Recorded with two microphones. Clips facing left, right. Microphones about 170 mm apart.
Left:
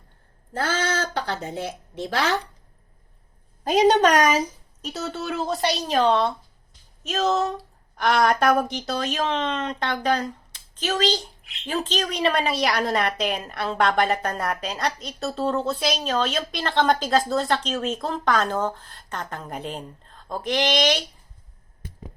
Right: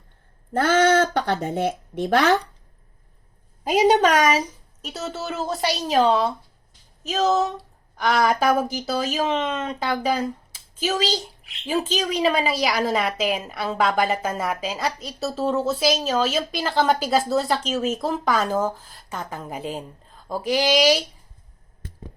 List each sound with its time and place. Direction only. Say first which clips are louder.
0.5 s speech: right 8 dB; 55° right (ahead or behind)
3.6 s a woman's voice: even; 10° right (ahead or behind)